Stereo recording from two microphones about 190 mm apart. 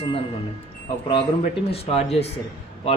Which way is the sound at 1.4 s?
30° left (ahead or behind).